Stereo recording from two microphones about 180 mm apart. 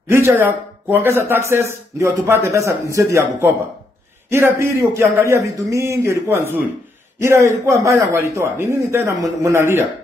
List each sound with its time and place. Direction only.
0.1 s speech: 15° right (ahead or behind)